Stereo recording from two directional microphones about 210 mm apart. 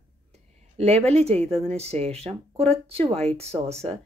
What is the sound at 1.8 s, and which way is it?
Speech, 30° right (ahead or behind).